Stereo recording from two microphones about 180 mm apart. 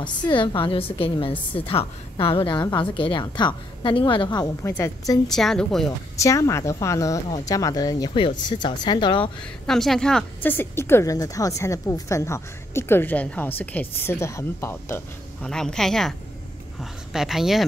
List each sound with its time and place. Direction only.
0.0 s a woman's voice: 25° left (ahead or behind)
5.3 s a woman's voice: centre (ahead or behind)
6.2 s a woman's voice: 15° left (ahead or behind)
9.4 s a woman's voice: centre (ahead or behind)